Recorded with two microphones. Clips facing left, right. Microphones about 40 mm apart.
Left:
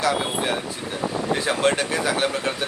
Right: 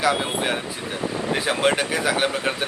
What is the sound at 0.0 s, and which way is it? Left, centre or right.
Speech, right.